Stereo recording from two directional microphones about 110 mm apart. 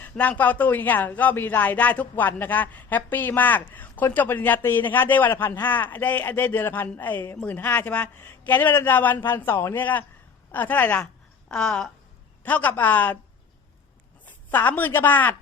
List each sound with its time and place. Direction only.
0.0 s a woman's voice: 15° left (ahead or behind)
14.3 s a woman's voice: 15° left (ahead or behind)